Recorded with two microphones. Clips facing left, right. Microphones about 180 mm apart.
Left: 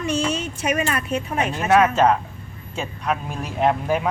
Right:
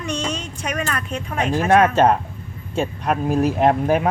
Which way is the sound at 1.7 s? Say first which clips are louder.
Right 1 dB; 50° right (ahead or behind).